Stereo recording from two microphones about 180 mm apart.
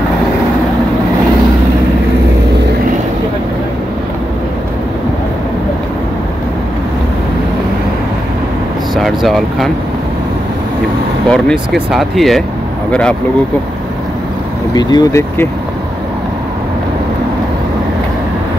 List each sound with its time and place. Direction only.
8.9 s speech: centre (ahead or behind)
11.2 s speech: 5° left (ahead or behind)
14.7 s speech: 20° left (ahead or behind)